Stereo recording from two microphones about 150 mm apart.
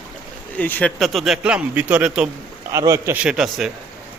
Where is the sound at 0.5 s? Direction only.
10° left (ahead or behind).